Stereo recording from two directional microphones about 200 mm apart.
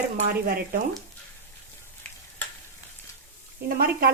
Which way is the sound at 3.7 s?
50° right (ahead or behind).